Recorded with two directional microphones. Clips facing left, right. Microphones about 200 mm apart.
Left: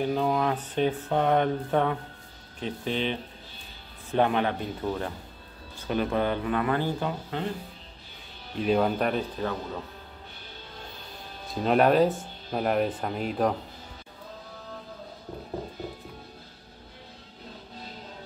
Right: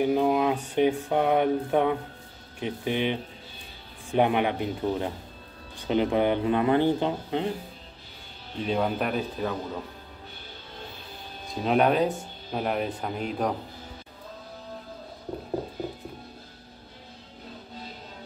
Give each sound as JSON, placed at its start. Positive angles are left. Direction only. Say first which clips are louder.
{"t": 0.0, "sound": "speech", "louder": "right 3 dB", "side_deg": -15}
{"t": 8.6, "sound": "speech", "louder": "left 2 dB", "side_deg": 0}
{"t": 11.6, "sound": "speech", "louder": "left 2 dB", "side_deg": 0}